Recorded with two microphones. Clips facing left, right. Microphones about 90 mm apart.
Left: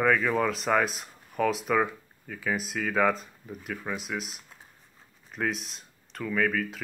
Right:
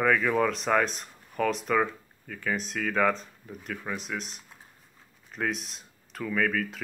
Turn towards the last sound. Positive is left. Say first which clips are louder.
# even
turn(degrees=0)  # may be behind; listen again after turning